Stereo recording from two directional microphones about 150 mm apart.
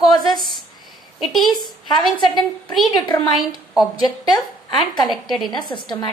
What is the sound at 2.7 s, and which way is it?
A woman's voice, centre (ahead or behind).